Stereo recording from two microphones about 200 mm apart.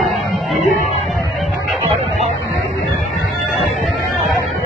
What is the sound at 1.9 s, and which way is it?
Music, 35° right (ahead or behind).